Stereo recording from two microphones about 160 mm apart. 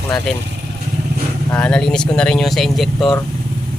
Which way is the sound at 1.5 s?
5° left (ahead or behind).